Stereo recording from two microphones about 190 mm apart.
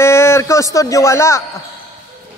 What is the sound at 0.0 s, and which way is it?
Speech, 15° left (ahead or behind).